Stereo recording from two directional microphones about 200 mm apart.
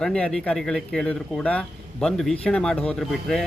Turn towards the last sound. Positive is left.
turn(degrees=0)  # may be behind; listen again after turning